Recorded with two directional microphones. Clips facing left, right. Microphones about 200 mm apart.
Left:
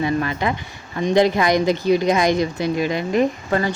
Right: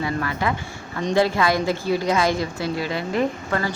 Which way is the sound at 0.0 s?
20° left (ahead or behind).